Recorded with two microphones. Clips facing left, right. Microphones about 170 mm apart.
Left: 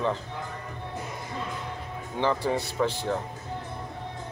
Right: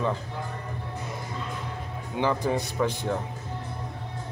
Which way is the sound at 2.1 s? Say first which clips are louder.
Even; 15° right (ahead or behind).